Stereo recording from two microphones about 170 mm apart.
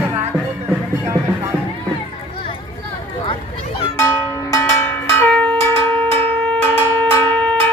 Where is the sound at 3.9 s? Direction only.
20° left (ahead or behind).